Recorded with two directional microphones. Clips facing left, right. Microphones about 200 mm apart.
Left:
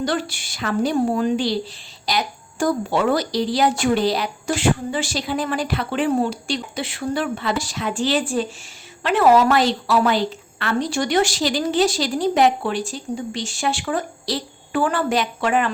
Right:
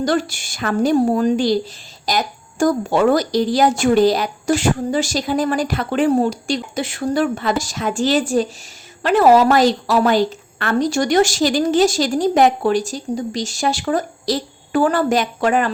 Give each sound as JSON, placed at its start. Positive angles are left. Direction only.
{"t": 0.0, "sound": "a woman's voice", "side_deg": -45}